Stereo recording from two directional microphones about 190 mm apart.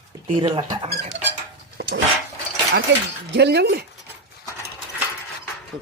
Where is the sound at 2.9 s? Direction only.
70° right (ahead or behind).